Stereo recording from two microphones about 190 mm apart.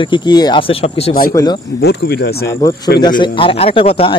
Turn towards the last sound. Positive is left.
turn(degrees=30)  # may be behind; listen again after turning